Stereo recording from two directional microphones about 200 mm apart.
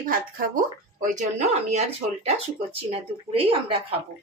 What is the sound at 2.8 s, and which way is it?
Speech, 30° right (ahead or behind).